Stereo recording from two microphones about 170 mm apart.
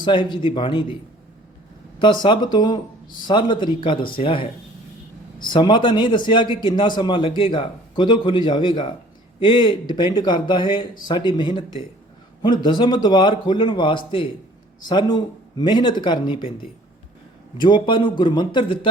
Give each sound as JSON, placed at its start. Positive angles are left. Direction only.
{"t": 0.0, "sound": "a man's voice", "side_deg": 30}
{"t": 2.0, "sound": "a man's voice", "side_deg": 25}
{"t": 17.6, "sound": "a man's voice", "side_deg": 30}